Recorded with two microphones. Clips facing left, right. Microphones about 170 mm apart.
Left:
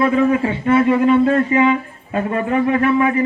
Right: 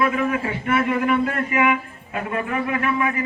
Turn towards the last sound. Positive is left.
turn(degrees=35)  # may be behind; listen again after turning